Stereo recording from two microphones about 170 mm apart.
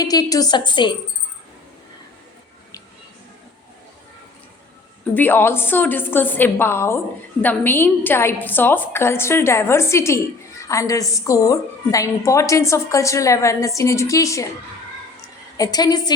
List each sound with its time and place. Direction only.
0.0 s a woman's voice: 20° left (ahead or behind)
5.1 s a woman's voice: 10° left (ahead or behind)
15.5 s a woman's voice: 20° left (ahead or behind)